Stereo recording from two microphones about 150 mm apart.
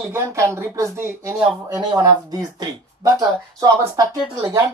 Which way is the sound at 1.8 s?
30° right (ahead or behind).